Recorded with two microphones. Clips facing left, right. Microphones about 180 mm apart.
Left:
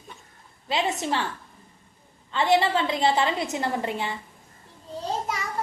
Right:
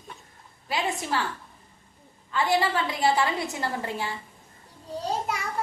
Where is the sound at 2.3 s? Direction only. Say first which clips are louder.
Left 3 dB; 20° left (ahead or behind).